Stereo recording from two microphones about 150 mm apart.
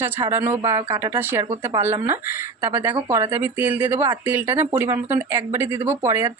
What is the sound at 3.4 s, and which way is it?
Speech, 10° right (ahead or behind).